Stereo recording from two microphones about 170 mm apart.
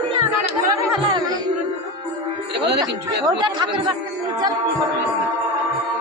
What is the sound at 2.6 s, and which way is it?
Speech, 80° right.